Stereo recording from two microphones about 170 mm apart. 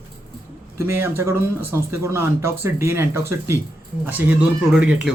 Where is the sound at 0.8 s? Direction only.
15° right (ahead or behind).